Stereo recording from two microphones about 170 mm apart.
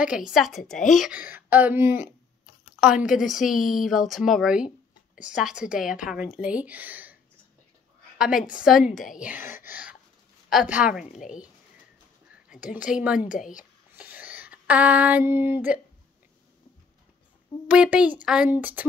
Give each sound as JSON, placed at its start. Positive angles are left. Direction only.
{"t": 0.0, "sound": "a woman's voice", "side_deg": -5}
{"t": 8.5, "sound": "a woman's voice", "side_deg": -5}
{"t": 9.7, "sound": "a sound", "side_deg": -10}
{"t": 10.5, "sound": "a woman's voice", "side_deg": -5}
{"t": 12.7, "sound": "speech", "side_deg": -5}
{"t": 13.3, "sound": "speech", "side_deg": 50}
{"t": 13.9, "sound": "a sound", "side_deg": -10}
{"t": 17.6, "sound": "speech", "side_deg": -5}